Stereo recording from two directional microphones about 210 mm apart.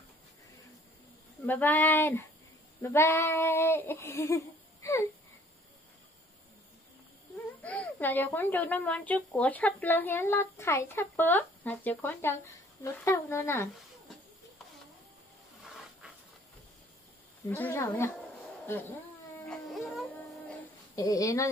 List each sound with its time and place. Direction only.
1.4 s speech: 10° left (ahead or behind)
7.6 s speech: 5° left (ahead or behind)
17.5 s speech: 10° left (ahead or behind)
19.5 s a sound: centre (ahead or behind)
20.9 s speech: 15° left (ahead or behind)